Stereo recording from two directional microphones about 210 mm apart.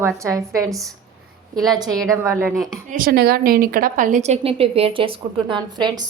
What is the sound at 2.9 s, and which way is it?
A woman's voice, 45° right (ahead or behind).